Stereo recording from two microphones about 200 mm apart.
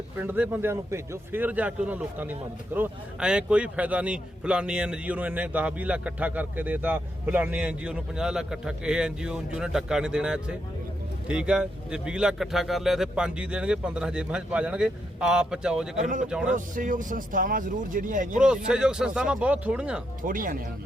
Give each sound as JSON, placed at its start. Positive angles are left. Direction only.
{"t": 0.2, "sound": "a man's voice", "side_deg": -10}
{"t": 16.0, "sound": "speech", "side_deg": -40}
{"t": 16.2, "sound": "a man's voice", "side_deg": -5}
{"t": 16.6, "sound": "speech", "side_deg": -40}
{"t": 18.3, "sound": "a man's voice", "side_deg": -5}
{"t": 20.2, "sound": "speech", "side_deg": -45}